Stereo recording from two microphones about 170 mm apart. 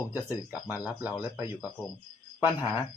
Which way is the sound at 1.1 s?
20° left (ahead or behind).